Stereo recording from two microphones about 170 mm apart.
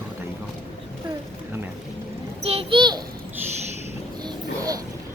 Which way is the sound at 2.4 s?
30° right (ahead or behind).